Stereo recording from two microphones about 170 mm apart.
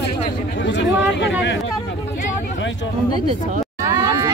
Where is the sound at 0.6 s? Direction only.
90° left.